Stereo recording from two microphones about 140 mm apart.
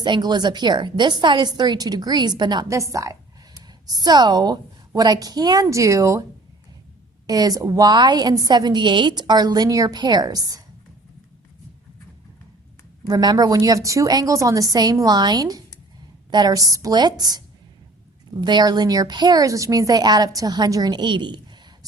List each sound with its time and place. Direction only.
0.0 s a woman's voice: 30° right (ahead or behind)
7.3 s a woman's voice: 25° right (ahead or behind)
13.1 s a woman's voice: 25° right (ahead or behind)